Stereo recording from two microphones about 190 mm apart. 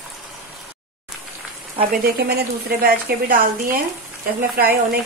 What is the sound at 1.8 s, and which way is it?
A woman's voice, 50° right (ahead or behind).